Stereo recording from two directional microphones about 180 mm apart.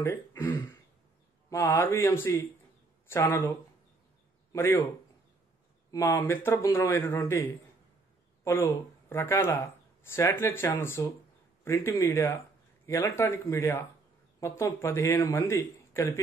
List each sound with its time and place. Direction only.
0.0 s a man's voice: 15° left (ahead or behind)
5.9 s speech: 20° left (ahead or behind)
8.5 s speech: 10° left (ahead or behind)